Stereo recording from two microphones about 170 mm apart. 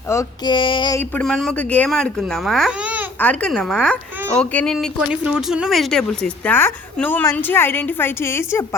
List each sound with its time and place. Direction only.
0.1 s speech: 15° left (ahead or behind)
0.5 s a sound: 30° left (ahead or behind)
1.2 s a child's voice: 5° left (ahead or behind)
3.2 s a child's voice: 10° left (ahead or behind)